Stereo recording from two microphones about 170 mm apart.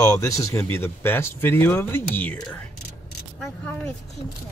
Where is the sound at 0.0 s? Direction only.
20° left (ahead or behind).